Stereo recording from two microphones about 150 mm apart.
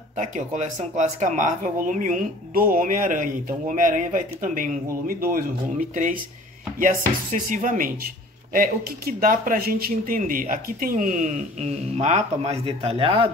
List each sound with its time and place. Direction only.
0.2 s speech: 55° right (ahead or behind); by 13.3 s 35° right (ahead or behind)